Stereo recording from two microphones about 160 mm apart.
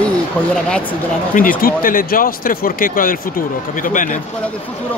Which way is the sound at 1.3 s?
60° left (ahead or behind).